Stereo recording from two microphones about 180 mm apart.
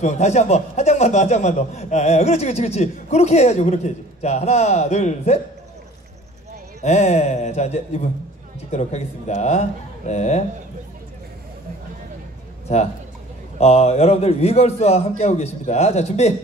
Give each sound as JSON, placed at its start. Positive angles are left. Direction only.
{"t": 0.0, "sound": "a man's voice", "side_deg": 40}
{"t": 6.8, "sound": "a man's voice", "side_deg": 40}
{"t": 13.6, "sound": "a man's voice", "side_deg": 35}